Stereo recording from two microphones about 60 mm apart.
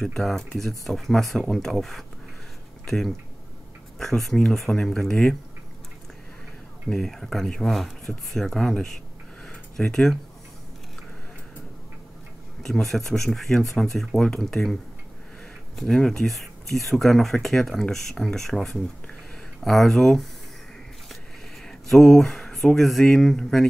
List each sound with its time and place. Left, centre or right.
0.0 s speech: centre
4.0 s speech: centre
6.9 s speech: centre
12.8 s speech: centre
21.6 s speech: centre